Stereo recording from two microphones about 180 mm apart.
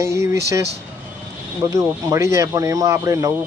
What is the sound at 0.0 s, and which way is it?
Speech, 15° right (ahead or behind).